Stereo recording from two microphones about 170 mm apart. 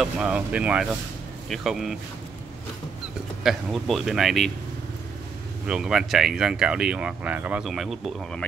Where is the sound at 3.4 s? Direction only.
Centre (ahead or behind).